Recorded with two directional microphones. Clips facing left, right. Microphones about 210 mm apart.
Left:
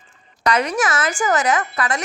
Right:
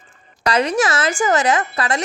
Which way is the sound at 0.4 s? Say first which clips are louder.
Right 2 dB; 30° right (ahead or behind).